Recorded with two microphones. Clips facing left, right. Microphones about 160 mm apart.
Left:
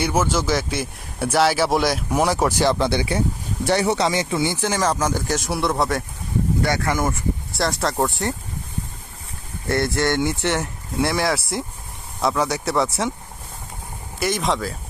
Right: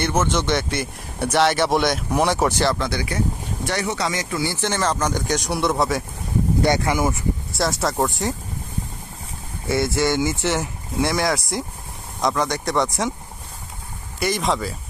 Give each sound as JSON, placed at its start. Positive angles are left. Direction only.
{"t": 0.0, "sound": "speech", "side_deg": 5}
{"t": 2.7, "sound": "speech", "side_deg": 30}
{"t": 4.5, "sound": "speech", "side_deg": 10}
{"t": 6.6, "sound": "speech", "side_deg": -20}
{"t": 6.9, "sound": "speech", "side_deg": -5}
{"t": 9.6, "sound": "speech", "side_deg": -5}
{"t": 14.2, "sound": "speech", "side_deg": 0}